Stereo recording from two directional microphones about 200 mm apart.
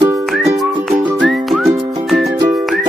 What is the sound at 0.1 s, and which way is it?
Music, centre (ahead or behind).